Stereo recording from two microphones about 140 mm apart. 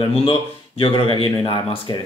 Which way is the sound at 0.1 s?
40° left (ahead or behind).